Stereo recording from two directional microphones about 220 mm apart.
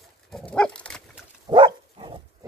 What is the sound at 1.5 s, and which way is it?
Dog, 25° right (ahead or behind).